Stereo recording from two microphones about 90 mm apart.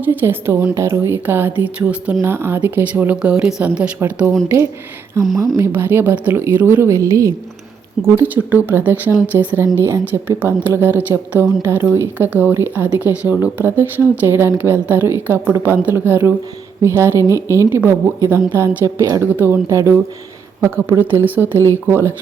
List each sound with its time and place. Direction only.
0.0 s a woman's voice: 20° right (ahead or behind)
0.7 s a woman's voice: 35° right (ahead or behind); by 3.8 s 10° right (ahead or behind)
4.4 s a woman's voice: 30° right (ahead or behind)
6.8 s a woman's voice: 35° right (ahead or behind)
8.0 s a woman's voice: 25° right (ahead or behind)
19.6 s a woman's voice: 35° right (ahead or behind)